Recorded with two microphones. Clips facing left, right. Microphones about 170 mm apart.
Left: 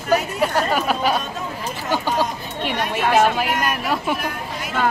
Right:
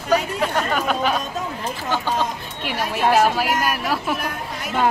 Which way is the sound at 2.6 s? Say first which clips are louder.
Even; 5° right (ahead or behind).